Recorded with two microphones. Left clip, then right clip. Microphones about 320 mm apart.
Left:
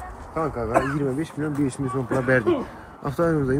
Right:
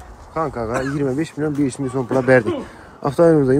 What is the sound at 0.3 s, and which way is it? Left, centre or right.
Speech, right.